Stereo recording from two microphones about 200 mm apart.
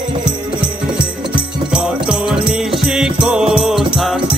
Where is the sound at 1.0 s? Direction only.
5° right (ahead or behind).